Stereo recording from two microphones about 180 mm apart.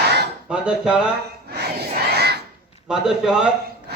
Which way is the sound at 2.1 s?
65° right (ahead or behind).